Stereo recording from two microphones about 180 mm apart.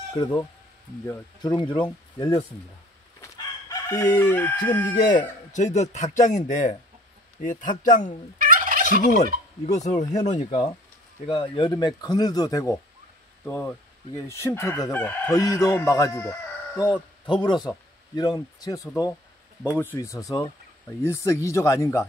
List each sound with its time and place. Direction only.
1.0 s speech: 20° left (ahead or behind)
3.2 s crowing: 20° left (ahead or behind)
5.8 s speech: 40° left (ahead or behind)
8.4 s gobble: 50° right (ahead or behind)
8.8 s speech: 45° left (ahead or behind)
11.2 s speech: 30° left (ahead or behind)
13.5 s chicken: 15° left (ahead or behind)
15.3 s speech: 20° left (ahead or behind)
19.6 s chicken: 10° left (ahead or behind)